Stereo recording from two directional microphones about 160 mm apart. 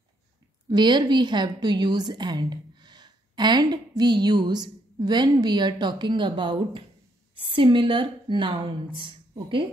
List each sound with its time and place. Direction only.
0.7 s a woman's voice: 25° right (ahead or behind)